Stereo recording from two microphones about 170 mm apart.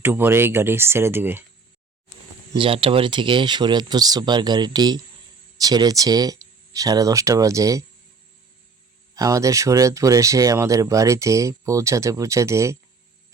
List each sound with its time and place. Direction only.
0.0 s speech: 10° right (ahead or behind)
2.5 s speech: 30° right (ahead or behind)
9.1 s speech: 20° right (ahead or behind)